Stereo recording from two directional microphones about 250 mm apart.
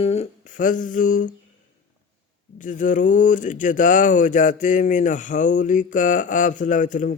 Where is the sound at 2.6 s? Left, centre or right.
Left.